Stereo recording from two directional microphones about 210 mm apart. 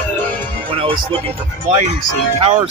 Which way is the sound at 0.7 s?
25° right (ahead or behind).